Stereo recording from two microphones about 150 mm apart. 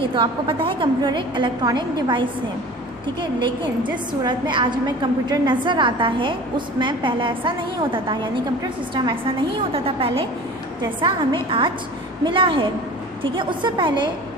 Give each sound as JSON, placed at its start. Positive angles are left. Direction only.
{"t": 0.1, "sound": "a woman's voice", "side_deg": -35}